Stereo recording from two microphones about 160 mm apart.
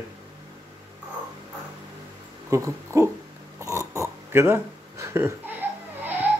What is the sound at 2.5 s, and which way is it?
Speech, 20° right (ahead or behind).